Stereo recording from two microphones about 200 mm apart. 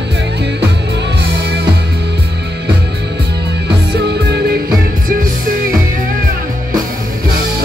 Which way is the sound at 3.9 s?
55° right (ahead or behind).